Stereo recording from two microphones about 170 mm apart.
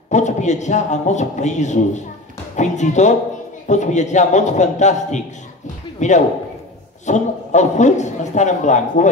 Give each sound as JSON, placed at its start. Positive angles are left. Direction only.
{"t": 0.1, "sound": "a man's voice", "side_deg": 45}